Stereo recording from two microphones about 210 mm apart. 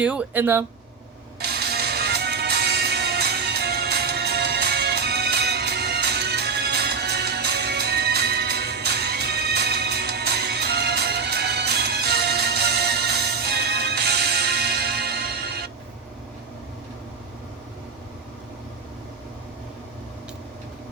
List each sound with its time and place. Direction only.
0.0 s speech: 5° right (ahead or behind)
1.4 s music: 50° right (ahead or behind)